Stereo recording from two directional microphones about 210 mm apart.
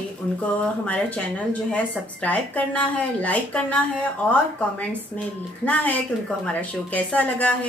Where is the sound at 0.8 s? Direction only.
5° left (ahead or behind).